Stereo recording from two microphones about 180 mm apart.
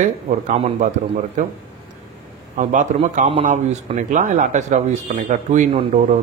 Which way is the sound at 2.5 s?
45° right (ahead or behind).